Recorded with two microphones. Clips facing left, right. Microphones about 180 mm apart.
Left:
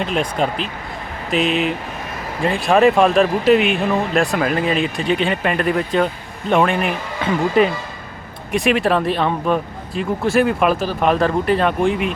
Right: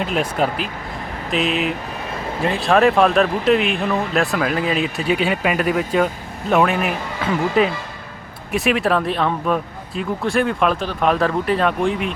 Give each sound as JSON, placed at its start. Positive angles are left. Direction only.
{"t": 0.0, "sound": "speech", "side_deg": -5}